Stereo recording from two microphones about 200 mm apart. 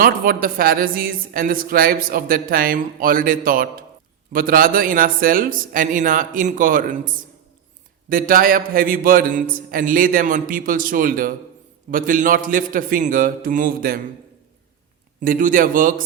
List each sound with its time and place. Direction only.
0.0 s a woman's voice: 45° right (ahead or behind)
8.1 s a woman's voice: 45° right (ahead or behind)
15.2 s a woman's voice: 45° right (ahead or behind)